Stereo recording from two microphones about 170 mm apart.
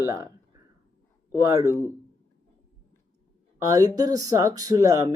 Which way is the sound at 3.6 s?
20° right (ahead or behind).